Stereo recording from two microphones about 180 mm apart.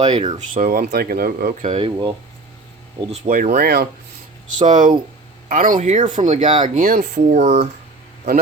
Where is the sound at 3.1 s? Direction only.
45° right (ahead or behind).